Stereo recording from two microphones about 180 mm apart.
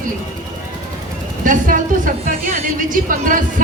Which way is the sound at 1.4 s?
50° right (ahead or behind).